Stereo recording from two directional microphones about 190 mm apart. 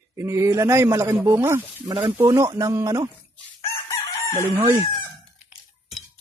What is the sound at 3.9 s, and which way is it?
Chicken, 15° left (ahead or behind).